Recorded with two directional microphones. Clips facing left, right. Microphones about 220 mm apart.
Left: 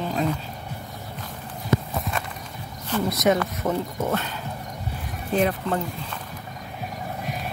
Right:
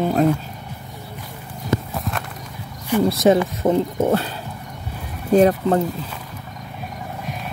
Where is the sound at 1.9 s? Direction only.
Centre (ahead or behind).